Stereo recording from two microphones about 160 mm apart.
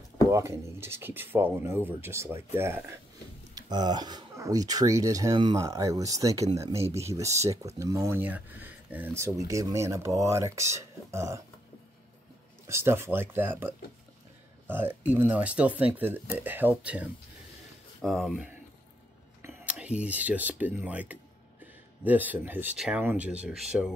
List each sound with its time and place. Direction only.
0.3 s speech: 15° right (ahead or behind)
12.6 s speech: 15° right (ahead or behind)
18.0 s speech: centre (ahead or behind)